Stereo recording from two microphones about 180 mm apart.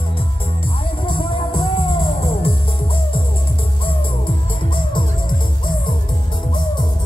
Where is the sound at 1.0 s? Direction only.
30° left (ahead or behind).